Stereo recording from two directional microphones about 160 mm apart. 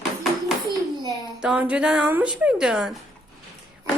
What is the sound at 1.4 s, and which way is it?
Speech, 5° right (ahead or behind).